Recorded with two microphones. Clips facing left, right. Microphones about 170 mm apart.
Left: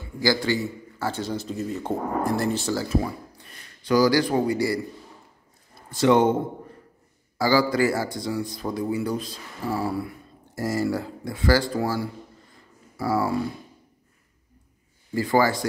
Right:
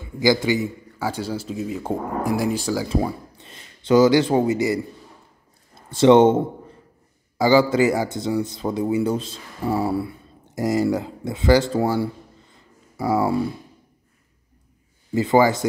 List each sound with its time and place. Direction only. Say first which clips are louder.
0.2 s a man's voice: right 4 dB; 20° right (ahead or behind)
2.9 s speech: right 2 dB; 25° right (ahead or behind)
5.8 s a man's voice: right 6 dB; 25° right (ahead or behind)
15.1 s a man's voice: right 4 dB; 20° right (ahead or behind)